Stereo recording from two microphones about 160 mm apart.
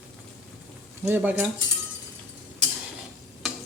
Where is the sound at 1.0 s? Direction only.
10° right (ahead or behind).